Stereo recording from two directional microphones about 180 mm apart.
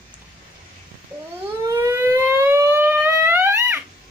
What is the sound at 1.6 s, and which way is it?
Siren, 15° right (ahead or behind).